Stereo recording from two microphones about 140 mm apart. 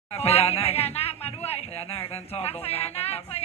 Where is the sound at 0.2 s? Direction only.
45° left (ahead or behind).